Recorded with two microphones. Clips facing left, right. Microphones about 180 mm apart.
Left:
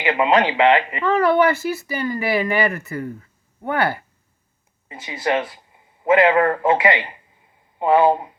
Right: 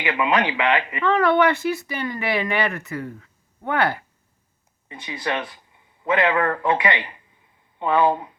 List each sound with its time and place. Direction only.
0.0 s speech: 30° left (ahead or behind)
1.0 s speech: 5° left (ahead or behind)
4.9 s speech: 25° left (ahead or behind)